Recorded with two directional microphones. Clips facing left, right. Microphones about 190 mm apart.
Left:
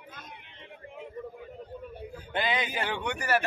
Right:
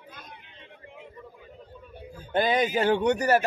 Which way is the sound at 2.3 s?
45° right (ahead or behind).